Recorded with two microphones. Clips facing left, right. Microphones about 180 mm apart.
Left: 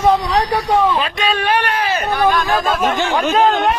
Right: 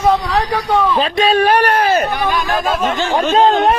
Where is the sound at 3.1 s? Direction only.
25° right (ahead or behind).